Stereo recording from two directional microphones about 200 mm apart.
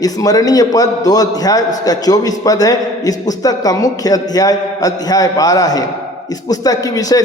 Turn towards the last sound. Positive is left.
turn(degrees=20)  # may be behind; listen again after turning